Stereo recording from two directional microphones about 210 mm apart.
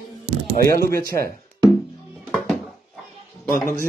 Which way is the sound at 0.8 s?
45° right (ahead or behind).